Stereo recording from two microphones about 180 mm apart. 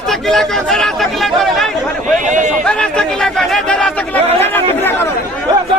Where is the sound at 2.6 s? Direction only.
5° left (ahead or behind).